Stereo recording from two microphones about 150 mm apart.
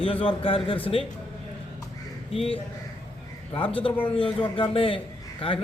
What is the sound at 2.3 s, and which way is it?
Speech, 40° left (ahead or behind).